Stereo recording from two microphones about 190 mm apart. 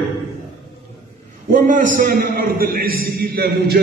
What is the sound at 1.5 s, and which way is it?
A man's voice, 45° right (ahead or behind).